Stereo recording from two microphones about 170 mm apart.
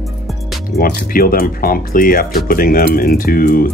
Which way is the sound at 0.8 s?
65° left (ahead or behind).